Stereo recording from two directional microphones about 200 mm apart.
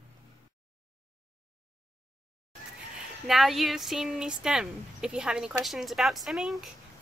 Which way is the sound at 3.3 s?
Centre (ahead or behind).